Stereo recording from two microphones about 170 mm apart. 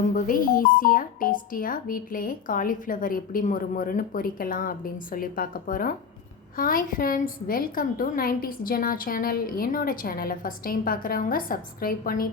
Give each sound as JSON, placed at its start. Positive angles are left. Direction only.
{"t": 0.2, "sound": "speech", "side_deg": 55}